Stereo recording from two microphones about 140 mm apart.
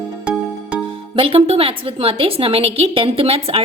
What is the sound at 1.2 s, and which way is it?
A woman's voice, 45° right (ahead or behind).